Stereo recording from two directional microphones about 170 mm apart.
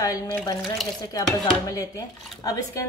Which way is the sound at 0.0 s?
20° left (ahead or behind).